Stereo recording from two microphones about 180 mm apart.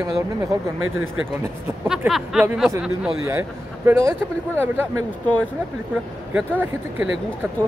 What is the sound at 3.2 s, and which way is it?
Speech, 15° right (ahead or behind).